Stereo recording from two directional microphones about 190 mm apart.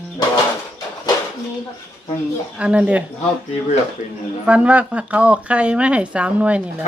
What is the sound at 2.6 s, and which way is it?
Speech, 5° right (ahead or behind).